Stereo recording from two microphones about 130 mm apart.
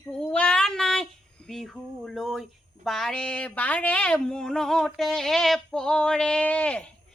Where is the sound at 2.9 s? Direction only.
5° left (ahead or behind).